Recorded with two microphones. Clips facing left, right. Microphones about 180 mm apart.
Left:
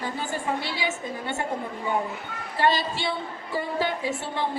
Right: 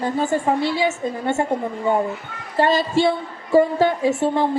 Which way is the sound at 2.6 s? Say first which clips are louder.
Right 7 dB; 50° right (ahead or behind).